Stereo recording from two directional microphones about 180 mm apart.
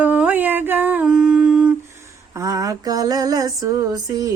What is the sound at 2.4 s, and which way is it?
Female singing, 20° right (ahead or behind).